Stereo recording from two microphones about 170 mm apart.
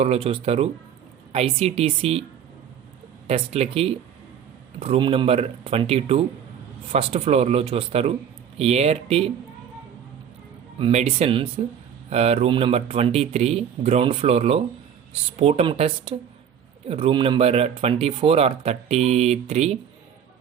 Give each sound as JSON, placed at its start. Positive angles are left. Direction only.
{"t": 0.0, "sound": "speech", "side_deg": -35}
{"t": 3.2, "sound": "speech", "side_deg": -35}
{"t": 10.8, "sound": "speech", "side_deg": -35}